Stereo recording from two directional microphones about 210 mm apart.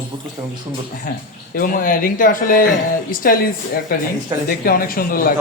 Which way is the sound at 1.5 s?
40° left (ahead or behind).